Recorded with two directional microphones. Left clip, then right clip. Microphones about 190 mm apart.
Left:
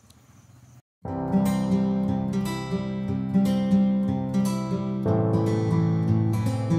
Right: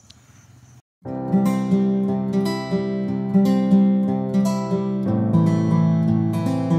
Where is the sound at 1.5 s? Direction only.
Centre (ahead or behind).